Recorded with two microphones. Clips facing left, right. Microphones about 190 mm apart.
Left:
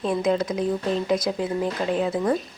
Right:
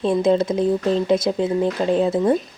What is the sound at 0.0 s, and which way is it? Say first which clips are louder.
Speech: right 5 dB; 25° right (ahead or behind).